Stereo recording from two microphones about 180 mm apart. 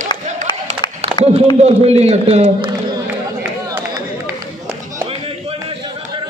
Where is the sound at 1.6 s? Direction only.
35° right (ahead or behind).